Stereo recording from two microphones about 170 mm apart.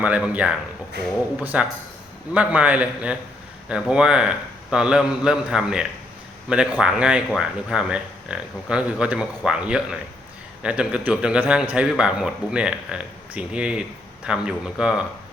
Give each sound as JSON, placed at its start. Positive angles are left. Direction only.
{"t": 0.0, "sound": "a man's voice", "side_deg": -5}